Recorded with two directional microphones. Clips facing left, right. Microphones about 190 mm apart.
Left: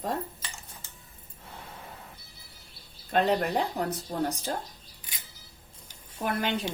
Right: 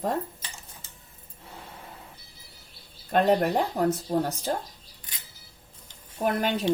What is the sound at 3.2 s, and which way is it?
Speech, 45° right (ahead or behind).